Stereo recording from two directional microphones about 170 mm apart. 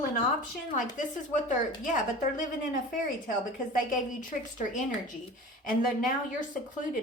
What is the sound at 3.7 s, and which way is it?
A woman's voice, 50° left (ahead or behind).